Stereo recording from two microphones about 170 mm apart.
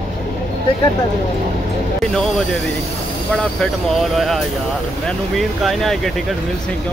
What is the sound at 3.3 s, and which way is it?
Speech, 5° left (ahead or behind).